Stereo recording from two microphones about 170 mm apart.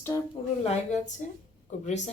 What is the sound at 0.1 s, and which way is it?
Speech, 20° left (ahead or behind).